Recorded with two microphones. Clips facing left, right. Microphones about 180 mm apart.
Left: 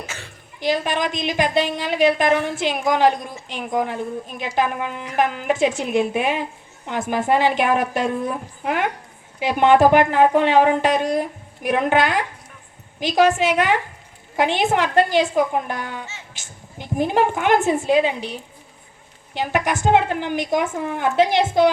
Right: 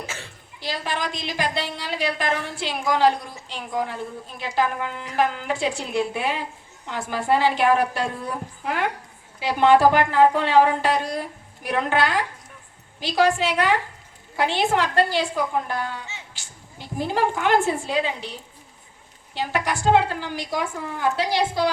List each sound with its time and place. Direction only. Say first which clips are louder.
0.6 s a woman's voice: left 7 dB; 20° left (ahead or behind)